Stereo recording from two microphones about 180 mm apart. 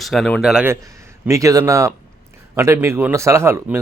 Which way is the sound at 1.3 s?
15° right (ahead or behind).